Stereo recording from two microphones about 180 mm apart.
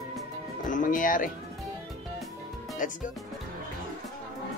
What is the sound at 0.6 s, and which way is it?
Speech, 45° left (ahead or behind).